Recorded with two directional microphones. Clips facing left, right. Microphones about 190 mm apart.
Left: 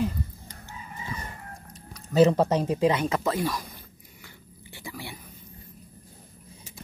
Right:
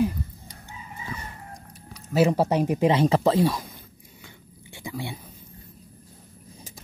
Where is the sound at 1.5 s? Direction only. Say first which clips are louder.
Right 1 dB; 10° right (ahead or behind); by 3.6 s 25° right (ahead or behind).